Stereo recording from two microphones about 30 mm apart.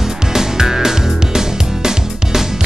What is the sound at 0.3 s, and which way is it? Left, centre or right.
Music, centre.